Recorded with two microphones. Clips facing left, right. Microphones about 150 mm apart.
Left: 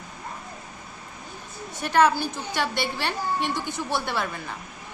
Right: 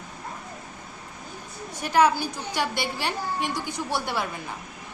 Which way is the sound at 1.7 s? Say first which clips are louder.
Even; 10° right (ahead or behind).